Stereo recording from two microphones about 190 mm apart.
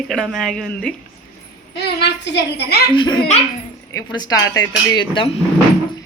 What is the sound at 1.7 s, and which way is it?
Speech, 60° left (ahead or behind).